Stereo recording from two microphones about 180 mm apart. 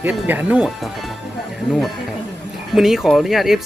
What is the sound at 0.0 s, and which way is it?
Speech, 10° right (ahead or behind).